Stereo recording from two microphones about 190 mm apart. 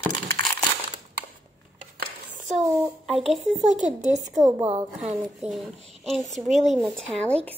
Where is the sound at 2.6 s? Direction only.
15° right (ahead or behind).